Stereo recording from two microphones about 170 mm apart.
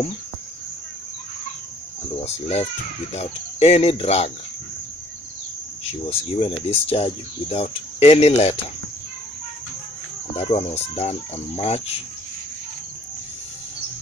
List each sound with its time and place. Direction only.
2.2 s speech: 40° left (ahead or behind)
6.0 s speech: 35° left (ahead or behind)
10.3 s speech: 40° left (ahead or behind)